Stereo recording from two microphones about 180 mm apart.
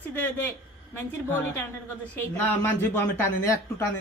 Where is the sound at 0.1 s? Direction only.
10° left (ahead or behind).